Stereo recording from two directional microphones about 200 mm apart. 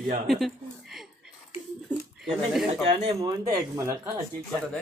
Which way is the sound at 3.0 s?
20° right (ahead or behind).